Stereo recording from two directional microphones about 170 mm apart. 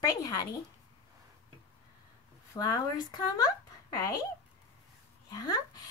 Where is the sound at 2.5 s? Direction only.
20° left (ahead or behind).